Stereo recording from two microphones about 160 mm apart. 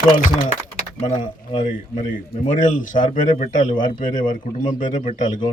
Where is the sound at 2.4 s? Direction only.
55° left (ahead or behind).